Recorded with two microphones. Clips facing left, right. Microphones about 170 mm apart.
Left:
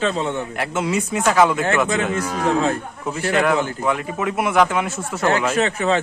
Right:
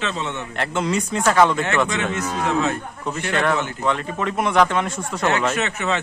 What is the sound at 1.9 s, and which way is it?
Speech, 30° left (ahead or behind).